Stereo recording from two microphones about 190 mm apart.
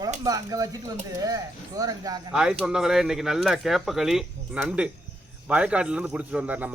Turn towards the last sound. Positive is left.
turn(degrees=-10)  # may be behind; listen again after turning